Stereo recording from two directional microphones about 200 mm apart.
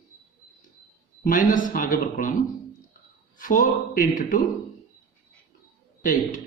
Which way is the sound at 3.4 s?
40° left (ahead or behind).